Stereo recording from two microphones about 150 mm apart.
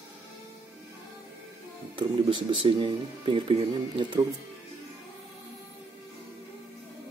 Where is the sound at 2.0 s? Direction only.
30° right (ahead or behind).